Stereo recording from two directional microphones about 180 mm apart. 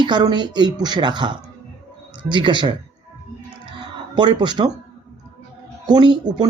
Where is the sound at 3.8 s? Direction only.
25° right (ahead or behind).